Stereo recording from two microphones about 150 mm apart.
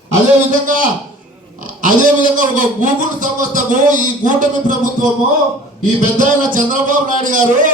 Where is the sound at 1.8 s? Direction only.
60° right (ahead or behind).